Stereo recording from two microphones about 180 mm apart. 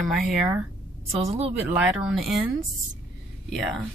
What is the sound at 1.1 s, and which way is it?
Speech, 35° right (ahead or behind).